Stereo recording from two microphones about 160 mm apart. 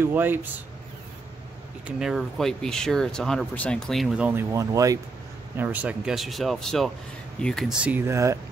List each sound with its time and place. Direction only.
0.0 s speech: 10° right (ahead or behind)
1.9 s speech: 5° right (ahead or behind)
7.8 s speech: 15° right (ahead or behind)